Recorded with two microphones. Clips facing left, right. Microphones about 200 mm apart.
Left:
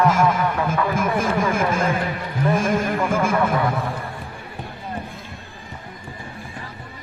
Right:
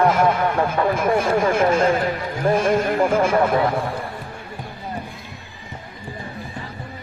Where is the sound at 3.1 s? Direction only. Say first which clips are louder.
Right 1 dB; 30° right (ahead or behind).